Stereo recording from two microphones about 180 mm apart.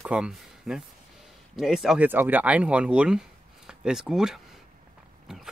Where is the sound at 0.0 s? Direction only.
5° right (ahead or behind).